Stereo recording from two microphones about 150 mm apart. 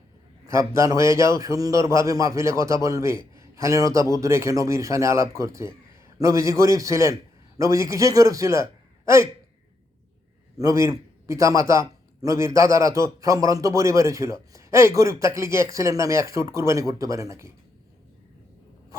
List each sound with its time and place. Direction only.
0.4 s a man's voice: 20° right (ahead or behind)
10.6 s a man's voice: 20° right (ahead or behind)